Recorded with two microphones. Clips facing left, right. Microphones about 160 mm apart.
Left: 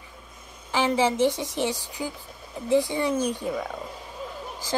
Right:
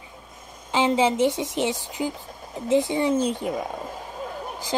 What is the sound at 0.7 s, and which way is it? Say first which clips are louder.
Speech: right 2 dB; 20° right (ahead or behind).